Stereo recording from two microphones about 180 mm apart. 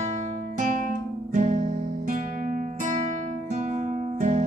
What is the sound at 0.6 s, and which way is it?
Music, 45° right (ahead or behind).